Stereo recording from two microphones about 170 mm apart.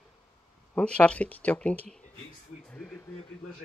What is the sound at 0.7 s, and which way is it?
Speech, 10° left (ahead or behind).